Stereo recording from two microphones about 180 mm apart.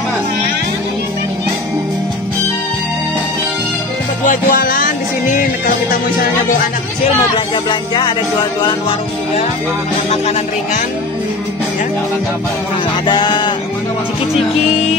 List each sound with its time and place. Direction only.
4.3 s music: 50° left (ahead or behind)
13.0 s sheep: 25° left (ahead or behind)